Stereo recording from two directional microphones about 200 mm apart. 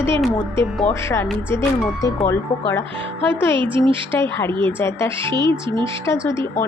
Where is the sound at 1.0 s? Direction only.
10° left (ahead or behind).